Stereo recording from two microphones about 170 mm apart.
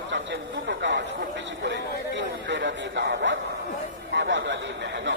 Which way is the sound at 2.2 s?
90° right.